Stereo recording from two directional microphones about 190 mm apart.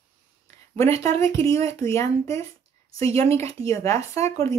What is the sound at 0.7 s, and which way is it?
Speech, 30° right (ahead or behind).